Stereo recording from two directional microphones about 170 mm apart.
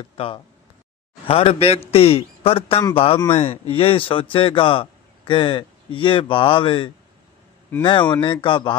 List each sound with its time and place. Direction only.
0.0 s a man's voice: 30° left (ahead or behind)